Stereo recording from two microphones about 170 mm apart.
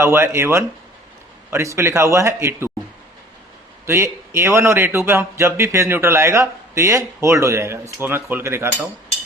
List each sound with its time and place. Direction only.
0.0 s a man's voice: 15° right (ahead or behind)
3.8 s a man's voice: 15° right (ahead or behind)